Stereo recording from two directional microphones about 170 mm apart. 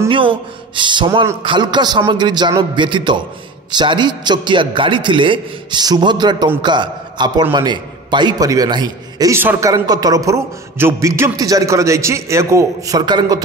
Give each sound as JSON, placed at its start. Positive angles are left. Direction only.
{"t": 0.1, "sound": "a man's voice", "side_deg": -30}